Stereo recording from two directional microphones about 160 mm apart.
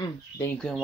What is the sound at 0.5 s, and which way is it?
Speech, 5° left (ahead or behind).